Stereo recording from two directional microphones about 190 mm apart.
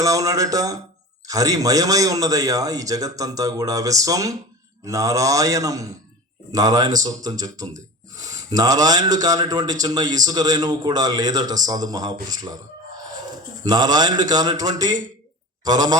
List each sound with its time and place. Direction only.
0.0 s a man's voice: 15° right (ahead or behind)
13.7 s a man's voice: 20° right (ahead or behind)